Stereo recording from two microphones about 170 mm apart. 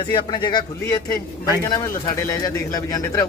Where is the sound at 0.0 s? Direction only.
25° left (ahead or behind).